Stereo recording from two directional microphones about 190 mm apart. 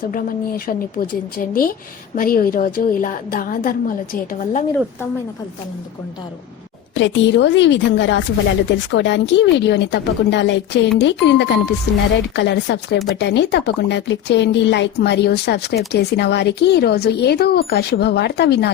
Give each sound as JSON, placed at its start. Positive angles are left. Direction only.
{"t": 0.1, "sound": "a woman's voice", "side_deg": 50}
{"t": 6.9, "sound": "a woman's voice", "side_deg": 70}